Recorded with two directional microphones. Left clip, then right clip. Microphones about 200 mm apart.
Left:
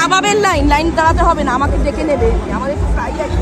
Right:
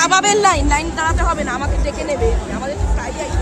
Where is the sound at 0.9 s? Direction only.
40° left (ahead or behind).